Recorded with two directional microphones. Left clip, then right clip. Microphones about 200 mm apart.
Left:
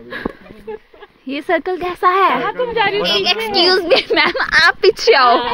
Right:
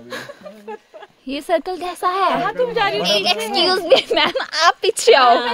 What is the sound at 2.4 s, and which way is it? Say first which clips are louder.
Speech: left 2 dB; 80° right.